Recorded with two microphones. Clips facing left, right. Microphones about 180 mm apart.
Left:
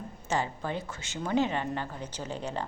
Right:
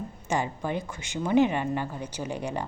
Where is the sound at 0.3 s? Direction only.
15° right (ahead or behind).